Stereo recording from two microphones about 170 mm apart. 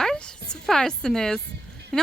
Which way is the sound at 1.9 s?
5° left (ahead or behind).